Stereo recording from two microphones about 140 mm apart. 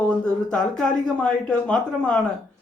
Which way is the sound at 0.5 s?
5° left (ahead or behind).